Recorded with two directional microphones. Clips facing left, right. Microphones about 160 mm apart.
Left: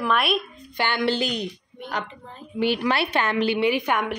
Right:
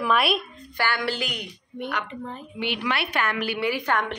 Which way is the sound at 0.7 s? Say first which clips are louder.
Left 3 dB; 20° left (ahead or behind).